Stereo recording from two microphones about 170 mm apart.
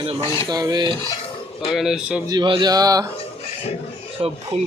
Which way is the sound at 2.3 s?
25° right (ahead or behind).